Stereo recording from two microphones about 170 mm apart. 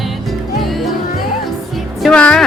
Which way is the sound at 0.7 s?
Centre (ahead or behind).